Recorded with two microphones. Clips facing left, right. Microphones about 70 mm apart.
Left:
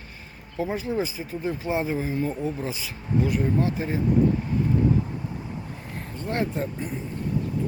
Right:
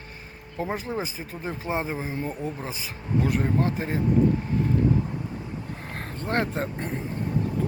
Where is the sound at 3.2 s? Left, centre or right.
Right.